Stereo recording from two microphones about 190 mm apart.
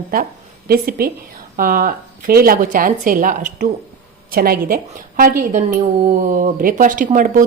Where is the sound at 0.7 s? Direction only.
50° right (ahead or behind).